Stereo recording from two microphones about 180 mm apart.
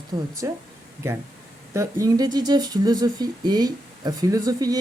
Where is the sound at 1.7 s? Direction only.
15° right (ahead or behind).